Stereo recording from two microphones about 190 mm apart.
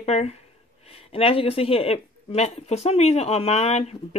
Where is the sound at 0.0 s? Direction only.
35° left (ahead or behind).